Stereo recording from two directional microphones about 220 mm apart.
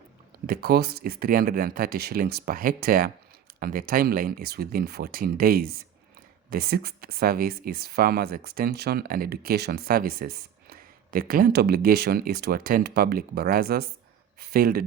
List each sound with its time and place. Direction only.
0.4 s speech: 45° right (ahead or behind)